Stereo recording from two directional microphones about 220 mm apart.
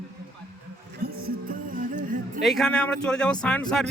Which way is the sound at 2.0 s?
35° right (ahead or behind).